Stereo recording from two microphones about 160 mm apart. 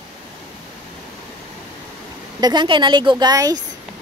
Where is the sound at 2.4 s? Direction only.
30° right (ahead or behind).